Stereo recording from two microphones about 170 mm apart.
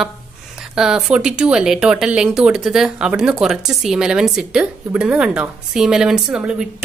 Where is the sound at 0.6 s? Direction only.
5° right (ahead or behind).